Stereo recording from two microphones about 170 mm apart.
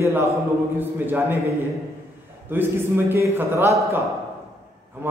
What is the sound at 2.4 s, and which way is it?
A man's voice, 10° right (ahead or behind).